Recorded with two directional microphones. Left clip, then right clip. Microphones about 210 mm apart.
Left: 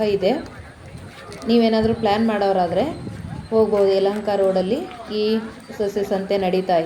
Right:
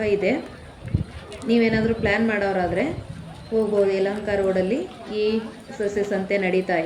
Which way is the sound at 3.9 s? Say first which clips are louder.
Left 4 dB; 25° left (ahead or behind).